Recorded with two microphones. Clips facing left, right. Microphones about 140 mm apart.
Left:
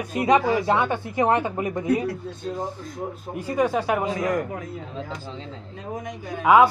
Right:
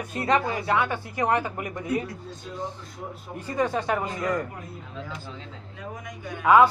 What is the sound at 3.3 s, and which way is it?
Speech, 10° left (ahead or behind).